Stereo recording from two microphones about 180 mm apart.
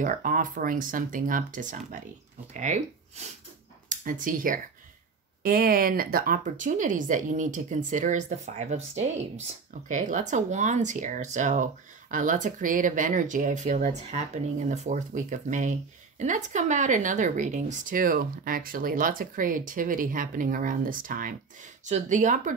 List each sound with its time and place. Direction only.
0.0 s speech: 45° right (ahead or behind)
9.8 s speech: 45° right (ahead or behind)